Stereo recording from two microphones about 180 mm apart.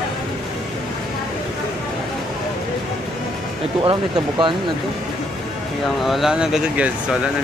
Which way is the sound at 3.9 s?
25° right (ahead or behind).